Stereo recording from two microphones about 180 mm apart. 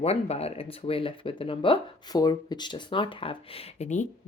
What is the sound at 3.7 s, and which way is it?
Speech, 40° left (ahead or behind).